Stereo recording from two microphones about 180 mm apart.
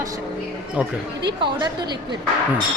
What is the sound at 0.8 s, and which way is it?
Speech, 10° right (ahead or behind).